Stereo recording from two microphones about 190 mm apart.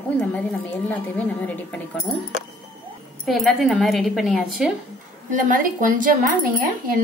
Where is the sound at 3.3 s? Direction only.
Centre (ahead or behind).